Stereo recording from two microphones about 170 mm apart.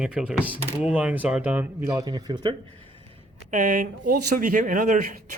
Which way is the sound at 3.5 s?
55° right (ahead or behind).